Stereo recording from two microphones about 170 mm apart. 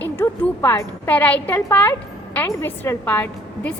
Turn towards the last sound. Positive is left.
turn(degrees=10)  # may be behind; listen again after turning